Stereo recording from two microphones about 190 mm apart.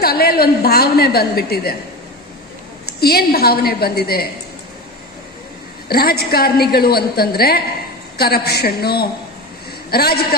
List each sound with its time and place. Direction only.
0.0 s a woman's voice: 55° left (ahead or behind)
3.0 s a woman's voice: 55° left (ahead or behind)
5.9 s a woman's voice: 55° left (ahead or behind)